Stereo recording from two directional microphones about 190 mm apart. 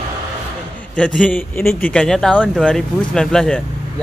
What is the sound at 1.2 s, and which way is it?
A woman's voice, 5° left (ahead or behind).